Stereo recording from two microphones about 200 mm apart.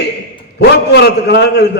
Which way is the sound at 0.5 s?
55° left (ahead or behind).